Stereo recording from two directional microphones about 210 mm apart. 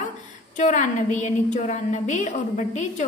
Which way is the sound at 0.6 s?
35° left (ahead or behind).